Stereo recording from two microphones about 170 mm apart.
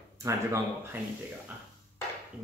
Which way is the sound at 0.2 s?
15° right (ahead or behind).